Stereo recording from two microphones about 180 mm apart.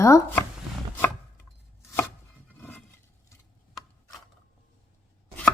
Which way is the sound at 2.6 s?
10° left (ahead or behind).